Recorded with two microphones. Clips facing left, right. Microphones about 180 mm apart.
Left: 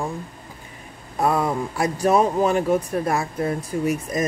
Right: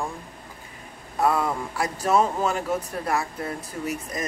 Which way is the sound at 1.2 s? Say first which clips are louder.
Left 2 dB; 20° left (ahead or behind).